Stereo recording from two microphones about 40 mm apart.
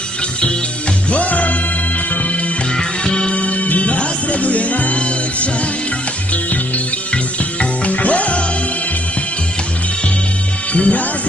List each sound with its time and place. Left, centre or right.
1.1 s music: left
2.7 s music: centre
10.7 s music: left